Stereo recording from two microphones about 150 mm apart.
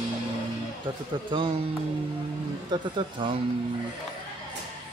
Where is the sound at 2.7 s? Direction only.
30° right (ahead or behind).